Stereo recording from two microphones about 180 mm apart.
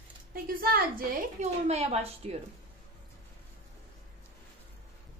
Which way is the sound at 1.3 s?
35° right (ahead or behind).